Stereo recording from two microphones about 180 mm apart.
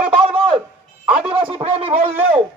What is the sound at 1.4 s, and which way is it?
Speech, 30° right (ahead or behind).